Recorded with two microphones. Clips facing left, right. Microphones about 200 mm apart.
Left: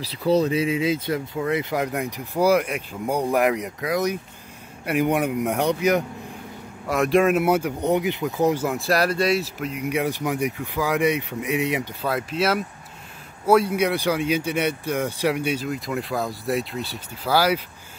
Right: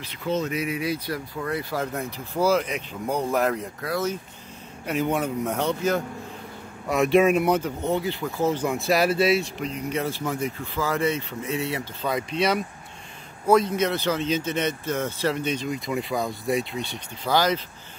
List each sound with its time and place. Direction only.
0.0 s speech: 35° left (ahead or behind); by 6.0 s 15° left (ahead or behind)
6.9 s speech: centre (ahead or behind); by 8.6 s 15° left (ahead or behind)
8.6 s speech: centre (ahead or behind); by 11.9 s 15° left (ahead or behind)
12.0 s speech: 5° left (ahead or behind)